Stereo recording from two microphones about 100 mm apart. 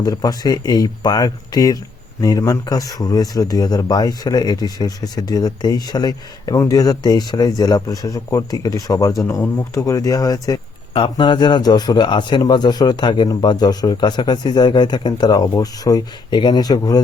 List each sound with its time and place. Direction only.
0.0 s speech: 40° left (ahead or behind)
10.9 s a man's voice: 55° left (ahead or behind); by 17.0 s 40° left (ahead or behind)